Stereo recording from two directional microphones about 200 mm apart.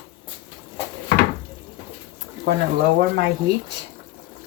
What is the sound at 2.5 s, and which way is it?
Speech, 60° right (ahead or behind).